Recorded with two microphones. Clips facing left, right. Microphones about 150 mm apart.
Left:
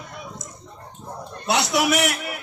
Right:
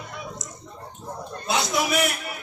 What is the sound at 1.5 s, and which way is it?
Speech, 75° left (ahead or behind).